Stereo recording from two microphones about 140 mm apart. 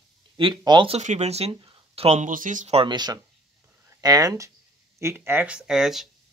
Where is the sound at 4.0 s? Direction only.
30° right (ahead or behind); by 6.0 s 5° right (ahead or behind).